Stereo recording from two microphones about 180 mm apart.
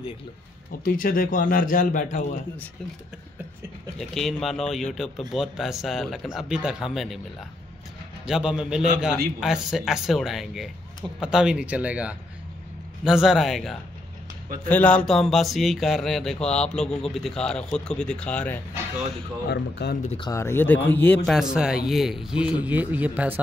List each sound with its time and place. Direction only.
0.7 s a man's voice: 55° left (ahead or behind)
4.1 s speech: centre (ahead or behind)
8.3 s speech: 5° right (ahead or behind)
19.5 s speech: 65° left (ahead or behind)
20.2 s speech: 20° left (ahead or behind)
21.4 s speech: 5° right (ahead or behind)